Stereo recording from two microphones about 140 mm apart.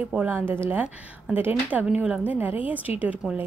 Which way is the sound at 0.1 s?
10° right (ahead or behind).